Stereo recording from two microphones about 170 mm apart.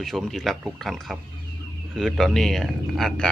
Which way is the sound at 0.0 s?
Centre (ahead or behind).